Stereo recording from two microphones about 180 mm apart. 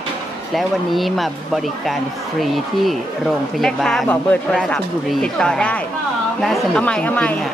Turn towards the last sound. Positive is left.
turn(degrees=10)  # may be behind; listen again after turning